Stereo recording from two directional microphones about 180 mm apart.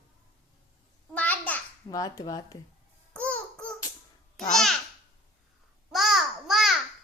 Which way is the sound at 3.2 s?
5° left (ahead or behind).